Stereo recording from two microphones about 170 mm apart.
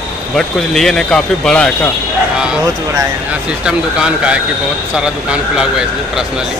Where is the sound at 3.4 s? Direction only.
5° right (ahead or behind).